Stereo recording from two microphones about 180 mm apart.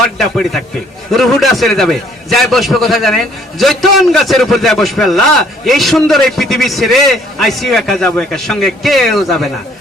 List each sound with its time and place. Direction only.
0.2 s a man's voice: centre (ahead or behind)